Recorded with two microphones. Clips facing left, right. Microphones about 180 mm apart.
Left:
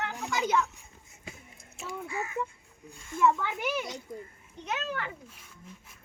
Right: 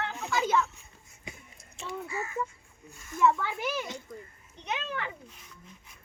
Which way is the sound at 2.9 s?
30° left (ahead or behind).